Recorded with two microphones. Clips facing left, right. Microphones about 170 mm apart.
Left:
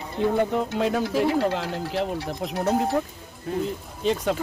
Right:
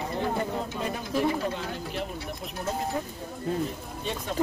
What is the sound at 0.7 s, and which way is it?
Speech, 85° left.